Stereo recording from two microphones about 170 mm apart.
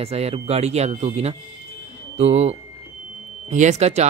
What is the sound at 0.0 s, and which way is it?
Speech, 35° right (ahead or behind).